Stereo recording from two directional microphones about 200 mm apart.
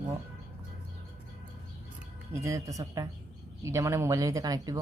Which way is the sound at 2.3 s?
15° right (ahead or behind).